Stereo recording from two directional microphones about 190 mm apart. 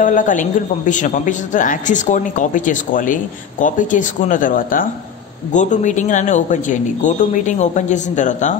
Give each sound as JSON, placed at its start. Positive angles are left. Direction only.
{"t": 0.0, "sound": "a woman's voice", "side_deg": 45}